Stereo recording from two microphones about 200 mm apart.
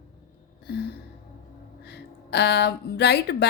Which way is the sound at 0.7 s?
55° left (ahead or behind).